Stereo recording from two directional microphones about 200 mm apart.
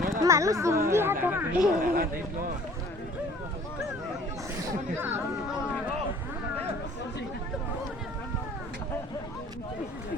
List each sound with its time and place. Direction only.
0.2 s speech: 15° right (ahead or behind)
1.8 s speech: 45° right (ahead or behind)
4.6 s speech: 10° right (ahead or behind)